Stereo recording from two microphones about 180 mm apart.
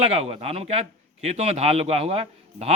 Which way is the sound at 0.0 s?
35° right (ahead or behind).